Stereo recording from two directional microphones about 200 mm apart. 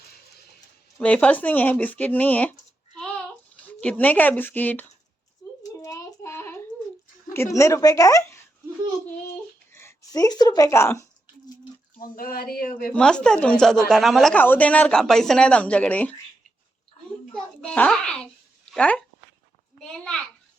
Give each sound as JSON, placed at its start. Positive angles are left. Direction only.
{"t": 0.9, "sound": "speech", "side_deg": 5}
{"t": 3.0, "sound": "a sound", "side_deg": 5}
{"t": 5.4, "sound": "a sound", "side_deg": 20}
{"t": 5.8, "sound": "child singing", "side_deg": 15}
{"t": 7.3, "sound": "speech", "side_deg": 15}
{"t": 9.7, "sound": "a sound", "side_deg": 15}
{"t": 11.9, "sound": "speech", "side_deg": 45}
{"t": 12.9, "sound": "a woman's voice", "side_deg": 5}
{"t": 17.3, "sound": "a child's voice", "side_deg": 5}